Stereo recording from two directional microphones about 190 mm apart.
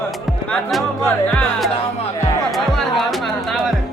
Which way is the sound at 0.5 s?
Centre (ahead or behind).